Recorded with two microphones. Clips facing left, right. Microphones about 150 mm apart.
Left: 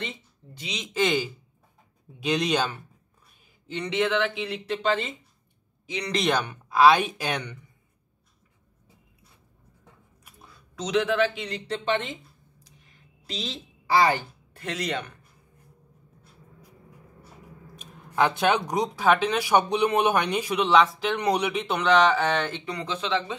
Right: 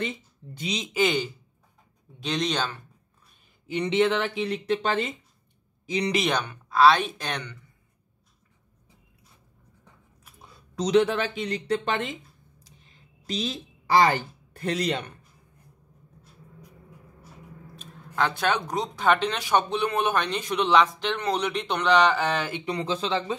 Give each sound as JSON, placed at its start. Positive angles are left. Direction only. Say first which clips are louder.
{"t": 0.9, "sound": "speech", "louder": "left 1 dB", "side_deg": 0}
{"t": 3.8, "sound": "speech", "louder": "right 2 dB", "side_deg": -30}
{"t": 6.1, "sound": "speech", "louder": "left 4 dB", "side_deg": 0}
{"t": 6.4, "sound": "speech", "louder": "even", "side_deg": 10}
{"t": 10.5, "sound": "speech", "louder": "right 5 dB", "side_deg": -35}
{"t": 13.3, "sound": "a woman's voice", "louder": "right 4 dB", "side_deg": -45}
{"t": 17.7, "sound": "speech", "louder": "left 3 dB", "side_deg": 15}
{"t": 22.7, "sound": "speech", "louder": "right 1 dB", "side_deg": -30}